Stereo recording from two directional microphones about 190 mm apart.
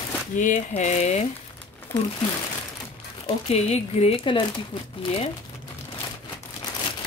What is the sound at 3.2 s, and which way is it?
A woman's voice, 35° left (ahead or behind).